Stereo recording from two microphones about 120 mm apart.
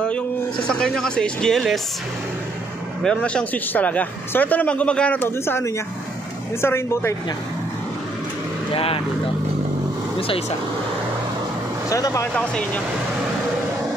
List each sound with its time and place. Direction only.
0.7 s speech: 5° left (ahead or behind)
3.0 s speech: 10° left (ahead or behind)
8.7 s speech: 50° left (ahead or behind)
11.9 s speech: 30° left (ahead or behind)
12.4 s speech: 10° left (ahead or behind)